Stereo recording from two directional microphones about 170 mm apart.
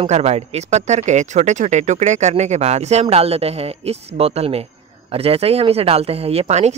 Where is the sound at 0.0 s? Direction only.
40° right (ahead or behind).